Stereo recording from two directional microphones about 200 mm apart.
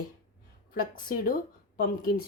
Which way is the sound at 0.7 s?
45° left (ahead or behind).